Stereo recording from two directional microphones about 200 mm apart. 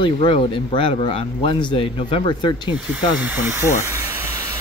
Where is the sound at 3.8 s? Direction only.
15° right (ahead or behind).